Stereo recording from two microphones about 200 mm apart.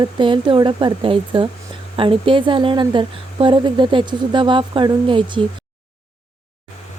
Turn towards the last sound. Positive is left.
turn(degrees=-25)  # may be behind; listen again after turning